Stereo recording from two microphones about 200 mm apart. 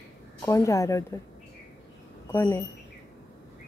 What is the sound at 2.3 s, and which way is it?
Speech, 15° left (ahead or behind).